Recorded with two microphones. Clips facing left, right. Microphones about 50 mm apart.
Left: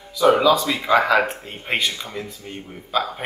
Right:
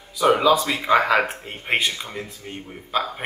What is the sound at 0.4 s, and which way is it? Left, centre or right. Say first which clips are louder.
Speech: left 1 dB; right.